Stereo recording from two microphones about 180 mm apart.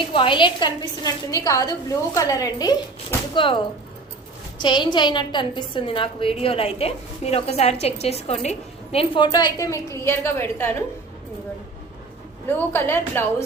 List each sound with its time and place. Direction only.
0.0 s a woman's voice: 30° left (ahead or behind)
4.6 s a woman's voice: 25° left (ahead or behind)
12.5 s a woman's voice: 10° left (ahead or behind)